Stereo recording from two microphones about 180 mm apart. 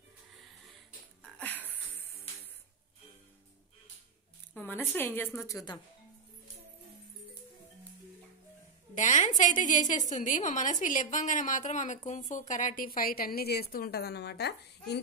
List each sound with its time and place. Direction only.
1.2 s a sound: 10° left (ahead or behind)
4.6 s a woman's voice: 10° left (ahead or behind)
8.9 s a woman's voice: 45° left (ahead or behind); by 15.0 s 65° left (ahead or behind)